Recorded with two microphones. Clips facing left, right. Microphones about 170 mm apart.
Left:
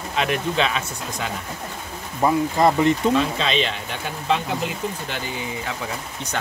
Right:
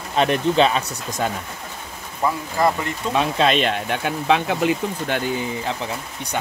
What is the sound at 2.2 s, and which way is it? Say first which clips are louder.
Speech: left 3 dB; 20° left (ahead or behind).